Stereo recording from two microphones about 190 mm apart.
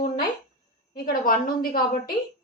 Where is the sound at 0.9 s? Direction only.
50° left (ahead or behind).